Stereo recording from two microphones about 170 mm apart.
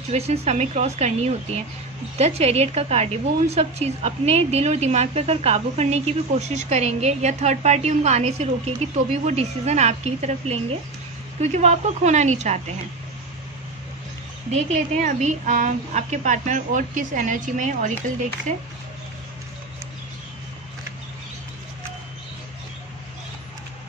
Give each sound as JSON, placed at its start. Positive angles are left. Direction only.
{"t": 0.1, "sound": "a woman's voice", "side_deg": -40}
{"t": 14.5, "sound": "a woman's voice", "side_deg": -45}